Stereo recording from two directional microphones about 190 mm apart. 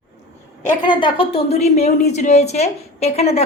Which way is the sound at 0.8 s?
25° left (ahead or behind).